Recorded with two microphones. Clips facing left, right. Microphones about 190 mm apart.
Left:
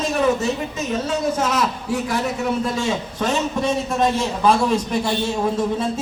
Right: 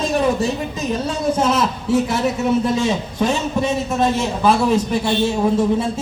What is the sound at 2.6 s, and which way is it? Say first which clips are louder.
A man's voice: right 4 dB; 20° right (ahead or behind).